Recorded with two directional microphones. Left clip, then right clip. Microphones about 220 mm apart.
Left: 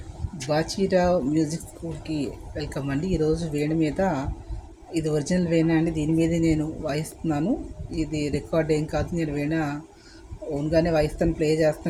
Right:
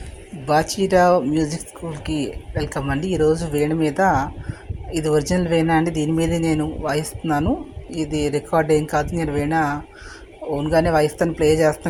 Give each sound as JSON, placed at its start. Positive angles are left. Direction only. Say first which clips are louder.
{"t": 0.4, "sound": "speech", "louder": "right 6 dB", "side_deg": -5}